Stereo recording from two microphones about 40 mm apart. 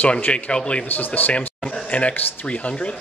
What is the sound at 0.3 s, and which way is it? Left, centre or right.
Speech, left.